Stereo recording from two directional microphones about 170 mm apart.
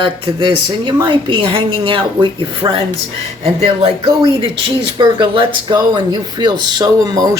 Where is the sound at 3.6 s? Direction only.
35° right (ahead or behind).